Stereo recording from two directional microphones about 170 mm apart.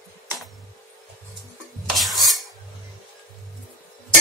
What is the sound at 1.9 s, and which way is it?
Stir, centre (ahead or behind).